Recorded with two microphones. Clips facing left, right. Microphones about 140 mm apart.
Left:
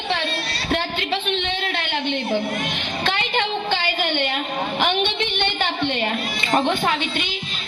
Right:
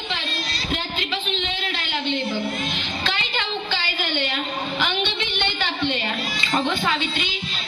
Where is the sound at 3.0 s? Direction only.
55° left (ahead or behind).